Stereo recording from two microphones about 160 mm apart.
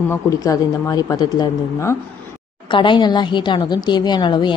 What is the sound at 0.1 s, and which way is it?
Speech, 20° left (ahead or behind).